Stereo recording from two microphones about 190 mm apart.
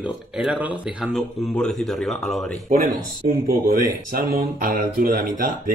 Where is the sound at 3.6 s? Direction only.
50° right (ahead or behind).